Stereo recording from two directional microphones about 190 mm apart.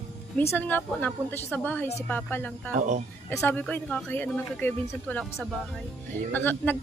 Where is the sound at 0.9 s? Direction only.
5° left (ahead or behind).